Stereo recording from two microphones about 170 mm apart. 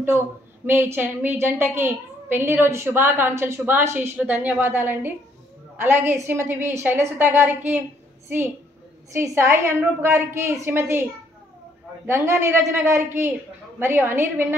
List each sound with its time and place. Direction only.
0.7 s a woman's voice: 15° right (ahead or behind)
9.1 s a woman's voice: 15° right (ahead or behind)
12.1 s a woman's voice: 15° right (ahead or behind)